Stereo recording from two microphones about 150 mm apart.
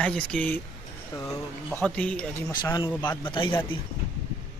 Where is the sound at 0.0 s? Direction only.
5° left (ahead or behind).